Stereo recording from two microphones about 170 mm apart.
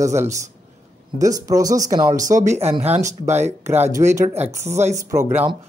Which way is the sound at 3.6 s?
15° right (ahead or behind).